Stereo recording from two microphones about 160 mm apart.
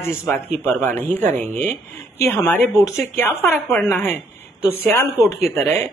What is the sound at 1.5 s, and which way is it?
Speech, 50° right (ahead or behind).